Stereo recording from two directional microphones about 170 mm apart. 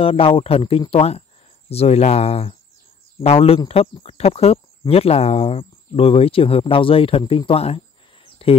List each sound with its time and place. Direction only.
0.0 s speech: 35° left (ahead or behind)